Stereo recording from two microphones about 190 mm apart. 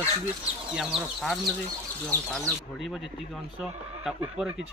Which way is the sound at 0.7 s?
Centre (ahead or behind).